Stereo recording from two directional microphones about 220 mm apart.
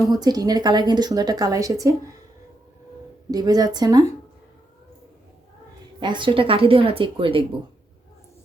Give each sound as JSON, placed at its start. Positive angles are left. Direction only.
{"t": 0.1, "sound": "a woman's voice", "side_deg": -20}
{"t": 3.3, "sound": "a woman's voice", "side_deg": -15}
{"t": 6.0, "sound": "speech", "side_deg": -20}